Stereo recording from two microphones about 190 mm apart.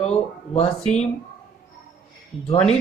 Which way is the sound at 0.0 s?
35° left (ahead or behind).